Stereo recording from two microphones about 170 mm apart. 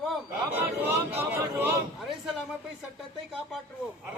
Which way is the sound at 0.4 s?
15° right (ahead or behind).